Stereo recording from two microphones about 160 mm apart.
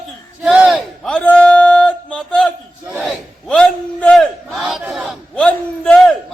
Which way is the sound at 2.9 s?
10° right (ahead or behind).